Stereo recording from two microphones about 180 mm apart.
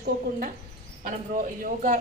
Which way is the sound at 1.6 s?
45° right (ahead or behind).